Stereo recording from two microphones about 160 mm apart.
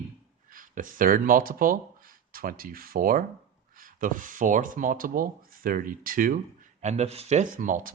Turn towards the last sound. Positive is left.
turn(degrees=-55)  # may be behind; listen again after turning